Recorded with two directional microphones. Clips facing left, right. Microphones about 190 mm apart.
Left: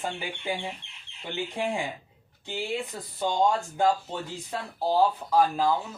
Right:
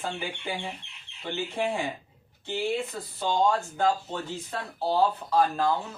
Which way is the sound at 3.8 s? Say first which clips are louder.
Left 1 dB; 15° left (ahead or behind).